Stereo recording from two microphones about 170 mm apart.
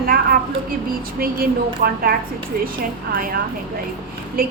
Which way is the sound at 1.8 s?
65° right (ahead or behind).